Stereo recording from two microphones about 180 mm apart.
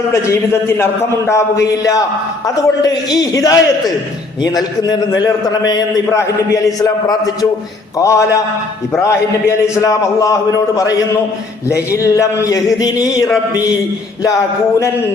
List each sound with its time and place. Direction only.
0.1 s a man's voice: 15° left (ahead or behind)
9.8 s a man's voice: 20° left (ahead or behind)
12.0 s a man's voice: 15° left (ahead or behind)